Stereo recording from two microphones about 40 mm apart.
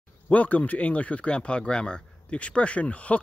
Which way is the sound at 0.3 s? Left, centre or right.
Left.